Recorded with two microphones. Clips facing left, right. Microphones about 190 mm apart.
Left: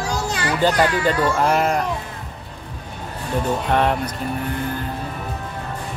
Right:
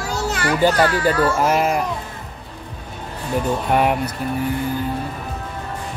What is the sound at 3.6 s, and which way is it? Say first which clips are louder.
Speech: right 2 dB; 10° right (ahead or behind).